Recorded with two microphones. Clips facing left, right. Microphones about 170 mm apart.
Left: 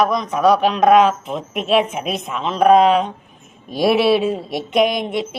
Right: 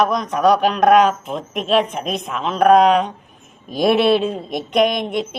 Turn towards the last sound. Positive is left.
turn(degrees=5)  # may be behind; listen again after turning